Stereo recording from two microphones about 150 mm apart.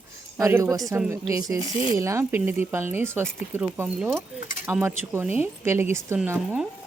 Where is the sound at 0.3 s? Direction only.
20° right (ahead or behind).